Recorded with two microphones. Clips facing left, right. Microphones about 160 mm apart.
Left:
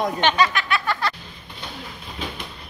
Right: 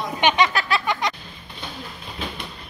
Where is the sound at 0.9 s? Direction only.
15° right (ahead or behind).